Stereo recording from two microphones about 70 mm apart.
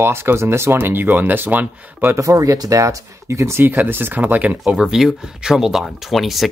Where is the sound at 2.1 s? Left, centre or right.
Right.